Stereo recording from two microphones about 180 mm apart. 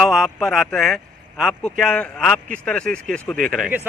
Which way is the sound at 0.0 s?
Centre (ahead or behind).